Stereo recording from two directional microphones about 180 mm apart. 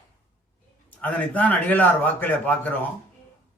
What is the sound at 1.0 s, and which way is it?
A man's voice, 10° left (ahead or behind).